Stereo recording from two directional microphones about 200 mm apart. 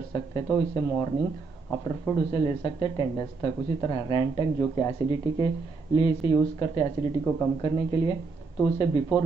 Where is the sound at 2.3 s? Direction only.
25° left (ahead or behind).